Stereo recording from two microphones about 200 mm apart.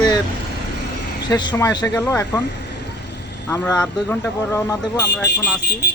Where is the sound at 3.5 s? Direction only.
15° left (ahead or behind).